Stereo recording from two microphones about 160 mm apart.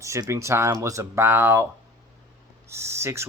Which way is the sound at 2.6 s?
15° right (ahead or behind).